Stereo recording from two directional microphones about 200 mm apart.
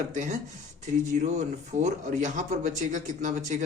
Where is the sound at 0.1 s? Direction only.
35° right (ahead or behind).